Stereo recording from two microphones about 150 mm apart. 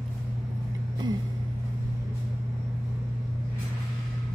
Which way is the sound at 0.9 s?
30° right (ahead or behind).